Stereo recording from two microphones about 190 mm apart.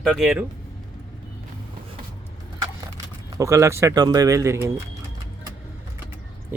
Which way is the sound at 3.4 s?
15° right (ahead or behind).